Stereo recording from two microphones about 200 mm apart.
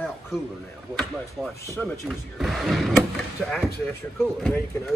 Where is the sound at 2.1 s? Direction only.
Centre (ahead or behind).